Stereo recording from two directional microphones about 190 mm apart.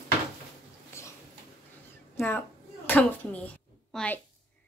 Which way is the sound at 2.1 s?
10° left (ahead or behind).